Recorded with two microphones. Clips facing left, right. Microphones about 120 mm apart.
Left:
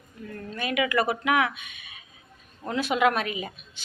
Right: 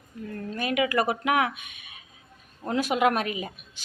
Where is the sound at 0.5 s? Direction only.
40° right (ahead or behind).